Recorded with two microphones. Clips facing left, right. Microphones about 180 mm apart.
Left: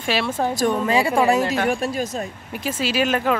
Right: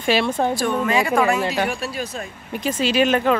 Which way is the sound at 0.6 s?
35° left (ahead or behind).